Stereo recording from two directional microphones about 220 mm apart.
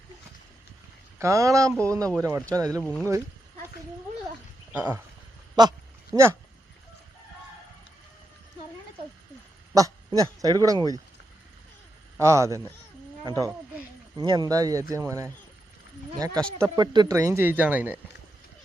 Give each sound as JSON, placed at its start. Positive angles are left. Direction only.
{"t": 1.2, "sound": "speech", "side_deg": -15}
{"t": 2.8, "sound": "speech", "side_deg": 5}
{"t": 4.7, "sound": "a sound", "side_deg": -5}
{"t": 5.6, "sound": "speech", "side_deg": -20}
{"t": 9.7, "sound": "speech", "side_deg": -15}
{"t": 12.1, "sound": "speech", "side_deg": -15}